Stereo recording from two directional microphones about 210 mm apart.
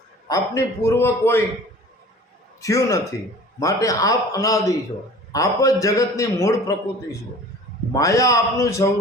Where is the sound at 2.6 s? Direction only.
15° left (ahead or behind).